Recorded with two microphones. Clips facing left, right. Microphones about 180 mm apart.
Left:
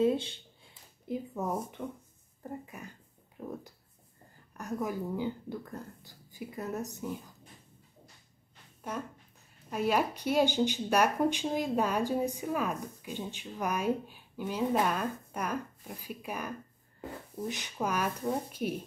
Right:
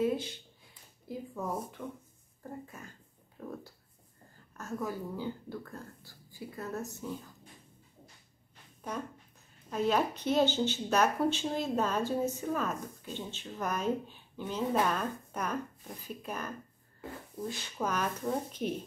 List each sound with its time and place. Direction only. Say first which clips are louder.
0.0 s a sound: left 3 dB; 25° left (ahead or behind)
1.0 s speech: left 3 dB; 20° left (ahead or behind)
4.6 s speech: left 2 dB; 15° left (ahead or behind)
9.7 s speech: even; 10° left (ahead or behind)